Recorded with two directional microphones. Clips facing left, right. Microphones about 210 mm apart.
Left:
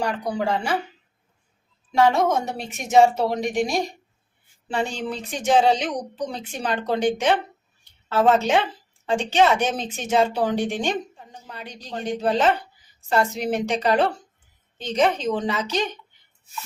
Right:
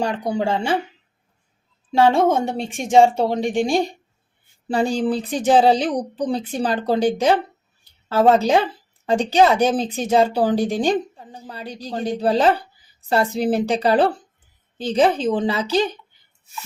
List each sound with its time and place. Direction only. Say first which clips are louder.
0.0 s speech: right 3 dB; 25° right (ahead or behind)
1.9 s speech: right 3 dB; 30° right (ahead or behind)